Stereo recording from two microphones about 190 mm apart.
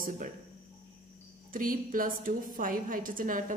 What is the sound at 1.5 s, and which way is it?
A woman's voice, 45° right (ahead or behind).